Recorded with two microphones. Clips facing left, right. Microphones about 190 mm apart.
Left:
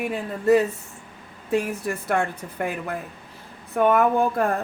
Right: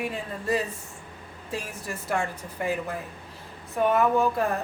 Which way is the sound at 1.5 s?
60° left (ahead or behind).